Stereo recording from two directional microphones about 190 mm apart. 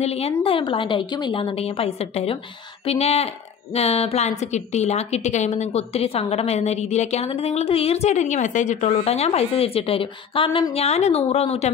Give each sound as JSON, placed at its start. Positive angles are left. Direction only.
{"t": 0.0, "sound": "a woman's voice", "side_deg": 30}